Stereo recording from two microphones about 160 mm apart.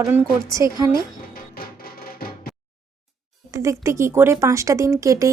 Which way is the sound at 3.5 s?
20° right (ahead or behind).